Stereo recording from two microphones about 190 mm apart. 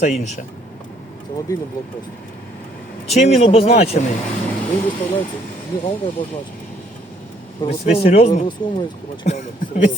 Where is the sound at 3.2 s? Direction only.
35° left (ahead or behind).